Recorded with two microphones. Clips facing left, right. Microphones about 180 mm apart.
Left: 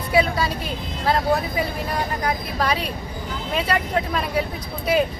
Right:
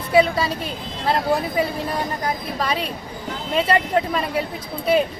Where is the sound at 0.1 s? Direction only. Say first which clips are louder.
Right 3 dB; 25° right (ahead or behind).